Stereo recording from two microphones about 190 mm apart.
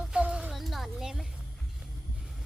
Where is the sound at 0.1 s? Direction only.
5° right (ahead or behind).